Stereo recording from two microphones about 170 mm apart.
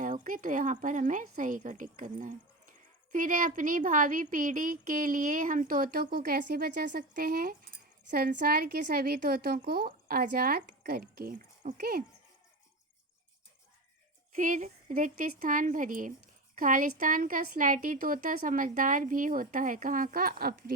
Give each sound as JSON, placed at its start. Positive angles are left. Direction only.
{"t": 0.0, "sound": "a woman's voice", "side_deg": -50}
{"t": 14.3, "sound": "a woman's voice", "side_deg": -50}